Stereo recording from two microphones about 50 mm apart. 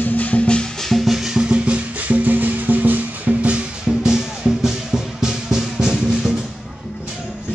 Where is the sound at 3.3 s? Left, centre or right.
Right.